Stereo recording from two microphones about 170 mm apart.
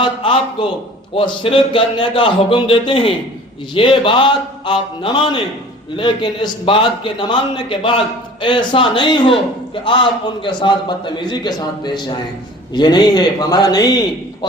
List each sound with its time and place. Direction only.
0.0 s a man's voice: 30° left (ahead or behind)